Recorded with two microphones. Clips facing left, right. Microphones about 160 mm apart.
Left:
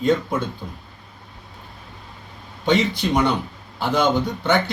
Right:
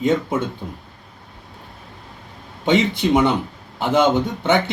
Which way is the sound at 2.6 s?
20° right (ahead or behind).